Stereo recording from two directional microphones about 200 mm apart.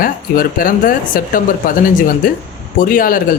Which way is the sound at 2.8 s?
45° left (ahead or behind).